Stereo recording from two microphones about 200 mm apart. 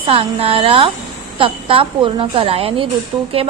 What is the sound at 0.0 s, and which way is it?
A woman's voice, 25° right (ahead or behind).